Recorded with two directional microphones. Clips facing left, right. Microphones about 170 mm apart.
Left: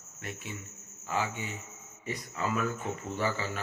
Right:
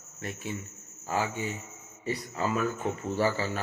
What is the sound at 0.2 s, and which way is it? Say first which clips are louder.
Cricket: right 5 dB; 35° right (ahead or behind).